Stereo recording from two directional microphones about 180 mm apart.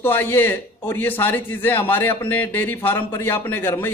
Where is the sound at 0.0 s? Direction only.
10° left (ahead or behind).